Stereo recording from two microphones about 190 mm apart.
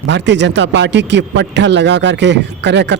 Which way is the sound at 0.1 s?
65° right (ahead or behind).